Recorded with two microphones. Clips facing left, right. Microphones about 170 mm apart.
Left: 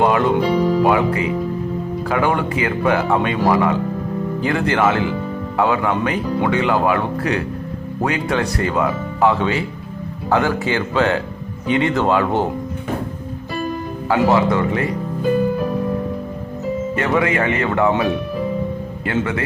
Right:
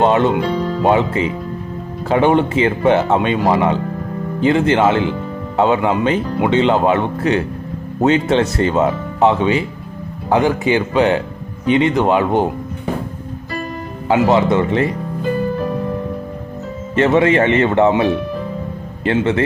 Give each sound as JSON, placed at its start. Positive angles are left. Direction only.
{"t": 0.0, "sound": "music", "side_deg": -25}
{"t": 0.4, "sound": "music", "side_deg": 10}
{"t": 0.8, "sound": "speech", "side_deg": -25}
{"t": 14.1, "sound": "speech", "side_deg": -20}
{"t": 16.9, "sound": "speech", "side_deg": -25}